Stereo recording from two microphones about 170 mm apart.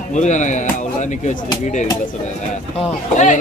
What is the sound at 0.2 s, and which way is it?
Speech, 45° left (ahead or behind).